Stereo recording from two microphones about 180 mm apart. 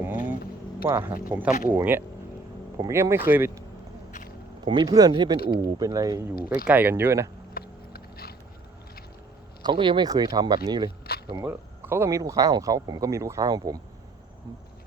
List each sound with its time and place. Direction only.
0.0 s vehicle: 10° right (ahead or behind)
0.8 s speech: 15° right (ahead or behind)
4.6 s speech: 25° right (ahead or behind)
7.5 s biting: 55° left (ahead or behind)
9.6 s speech: 25° right (ahead or behind)
11.0 s a sound: 60° left (ahead or behind)
11.4 s speech: 10° right (ahead or behind)